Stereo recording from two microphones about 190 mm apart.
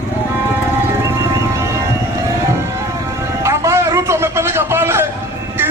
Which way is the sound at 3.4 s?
15° right (ahead or behind).